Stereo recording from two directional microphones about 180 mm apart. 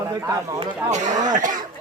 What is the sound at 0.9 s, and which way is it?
Speech, 40° right (ahead or behind).